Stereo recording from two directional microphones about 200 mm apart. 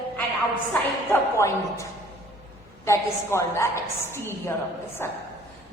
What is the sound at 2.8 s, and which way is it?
A woman's voice, 15° left (ahead or behind).